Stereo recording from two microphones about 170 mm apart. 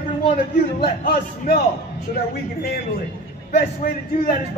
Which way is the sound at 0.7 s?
65° left (ahead or behind).